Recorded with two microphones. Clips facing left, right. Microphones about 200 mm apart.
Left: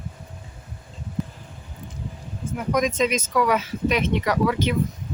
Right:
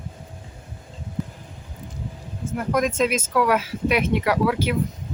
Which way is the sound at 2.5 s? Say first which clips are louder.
Right 1 dB; centre (ahead or behind).